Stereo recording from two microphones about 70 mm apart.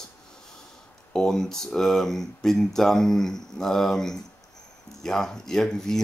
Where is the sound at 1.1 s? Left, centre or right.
Centre.